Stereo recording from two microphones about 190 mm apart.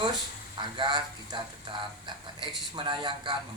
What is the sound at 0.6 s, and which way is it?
Speech, 25° right (ahead or behind).